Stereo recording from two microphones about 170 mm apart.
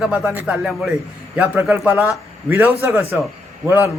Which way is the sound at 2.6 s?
15° right (ahead or behind).